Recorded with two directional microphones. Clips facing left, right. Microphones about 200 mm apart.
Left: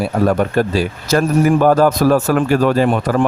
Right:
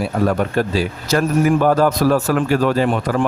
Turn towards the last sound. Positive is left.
turn(degrees=50)  # may be behind; listen again after turning